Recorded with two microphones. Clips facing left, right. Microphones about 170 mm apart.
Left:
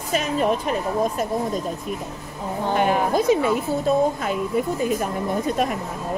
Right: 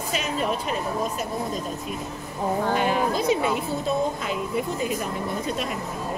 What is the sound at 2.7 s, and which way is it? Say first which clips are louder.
Speech: left 7 dB; 55° left (ahead or behind).